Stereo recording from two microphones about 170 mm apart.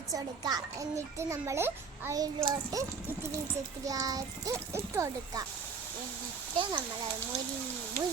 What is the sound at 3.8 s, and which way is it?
A child's voice, 20° right (ahead or behind).